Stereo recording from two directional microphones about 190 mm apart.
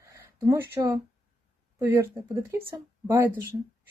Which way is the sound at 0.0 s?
15° right (ahead or behind).